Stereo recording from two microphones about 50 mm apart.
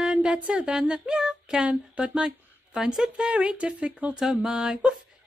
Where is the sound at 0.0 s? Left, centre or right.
Centre.